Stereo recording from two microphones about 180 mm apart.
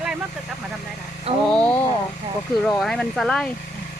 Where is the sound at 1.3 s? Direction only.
35° right (ahead or behind).